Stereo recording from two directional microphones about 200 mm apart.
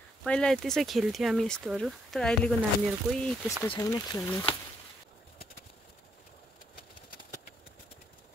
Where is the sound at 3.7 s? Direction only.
20° left (ahead or behind).